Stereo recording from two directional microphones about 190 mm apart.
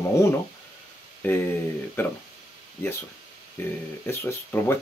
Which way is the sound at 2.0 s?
10° left (ahead or behind).